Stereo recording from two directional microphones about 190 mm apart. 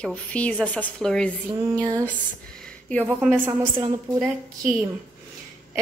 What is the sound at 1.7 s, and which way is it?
Speech, 15° right (ahead or behind).